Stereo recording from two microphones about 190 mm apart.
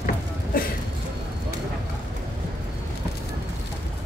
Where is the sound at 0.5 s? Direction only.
50° left (ahead or behind).